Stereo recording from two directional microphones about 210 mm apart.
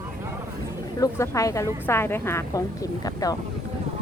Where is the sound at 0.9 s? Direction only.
15° left (ahead or behind).